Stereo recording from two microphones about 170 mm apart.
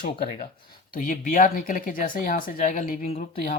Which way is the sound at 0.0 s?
55° left (ahead or behind).